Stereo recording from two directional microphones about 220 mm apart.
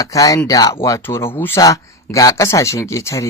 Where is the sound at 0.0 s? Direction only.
15° left (ahead or behind).